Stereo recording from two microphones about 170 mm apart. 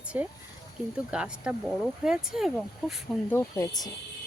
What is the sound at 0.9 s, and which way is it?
Speech, 5° right (ahead or behind).